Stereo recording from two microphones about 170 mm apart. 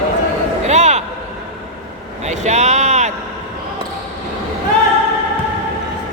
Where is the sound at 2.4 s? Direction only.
40° right (ahead or behind).